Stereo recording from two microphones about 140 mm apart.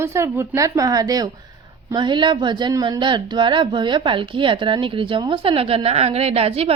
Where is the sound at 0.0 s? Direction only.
20° right (ahead or behind).